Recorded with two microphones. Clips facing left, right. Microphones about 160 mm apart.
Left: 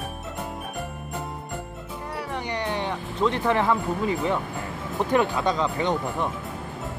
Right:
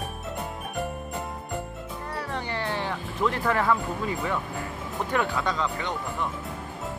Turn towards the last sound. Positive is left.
turn(degrees=20)  # may be behind; listen again after turning